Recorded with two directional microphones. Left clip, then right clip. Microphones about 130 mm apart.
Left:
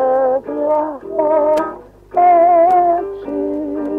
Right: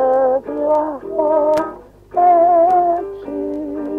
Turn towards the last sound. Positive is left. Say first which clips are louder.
# left 3 dB
turn(degrees=-40)  # may be behind; listen again after turning